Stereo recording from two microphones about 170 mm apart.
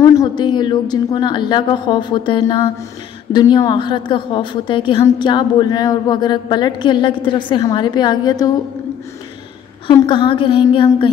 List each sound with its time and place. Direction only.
0.0 s a woman's voice: 20° left (ahead or behind)
10.0 s a woman's voice: 30° left (ahead or behind)